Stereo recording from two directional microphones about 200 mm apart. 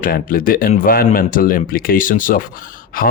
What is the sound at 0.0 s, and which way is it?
Speech, 45° left (ahead or behind).